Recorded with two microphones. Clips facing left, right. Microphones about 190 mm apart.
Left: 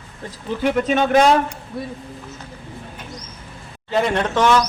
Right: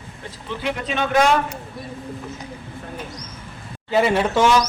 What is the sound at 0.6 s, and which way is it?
Speech, 45° left (ahead or behind).